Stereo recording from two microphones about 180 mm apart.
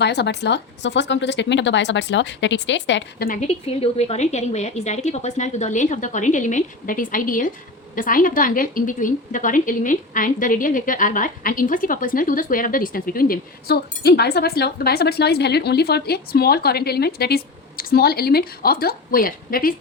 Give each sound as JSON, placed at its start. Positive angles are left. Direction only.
{"t": 0.0, "sound": "speech", "side_deg": 70}
{"t": 3.4, "sound": "a woman's voice", "side_deg": 35}